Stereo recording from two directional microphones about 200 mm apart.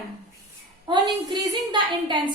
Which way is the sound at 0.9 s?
20° right (ahead or behind).